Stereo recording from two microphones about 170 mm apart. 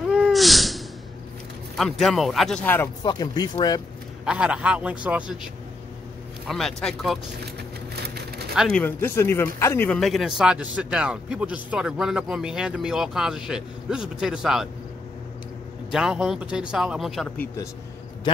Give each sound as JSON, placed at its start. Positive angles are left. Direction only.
{"t": 0.1, "sound": "a sound", "side_deg": 0}
{"t": 1.8, "sound": "a man's voice", "side_deg": 0}
{"t": 3.0, "sound": "speech", "side_deg": 25}
{"t": 4.2, "sound": "a man's voice", "side_deg": -5}
{"t": 6.4, "sound": "a man's voice", "side_deg": 0}
{"t": 7.9, "sound": "a sound", "side_deg": -70}
{"t": 8.7, "sound": "a man's voice", "side_deg": 10}
{"t": 15.9, "sound": "a man's voice", "side_deg": -5}